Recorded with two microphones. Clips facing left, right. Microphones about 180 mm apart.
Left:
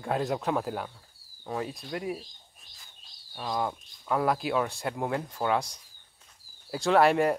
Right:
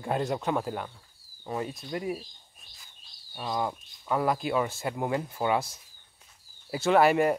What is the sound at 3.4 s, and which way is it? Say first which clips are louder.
Speech: even; centre (ahead or behind).